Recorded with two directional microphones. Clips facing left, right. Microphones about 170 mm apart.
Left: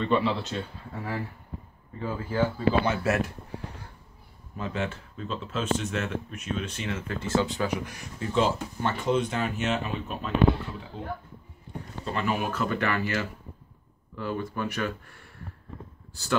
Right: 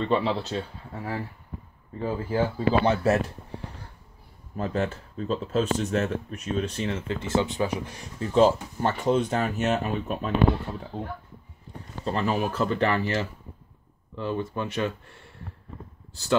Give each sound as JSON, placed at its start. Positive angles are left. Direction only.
{"t": 0.1, "sound": "speech", "side_deg": -30}
{"t": 2.0, "sound": "speech", "side_deg": -30}
{"t": 4.6, "sound": "speech", "side_deg": -40}
{"t": 12.0, "sound": "speech", "side_deg": -35}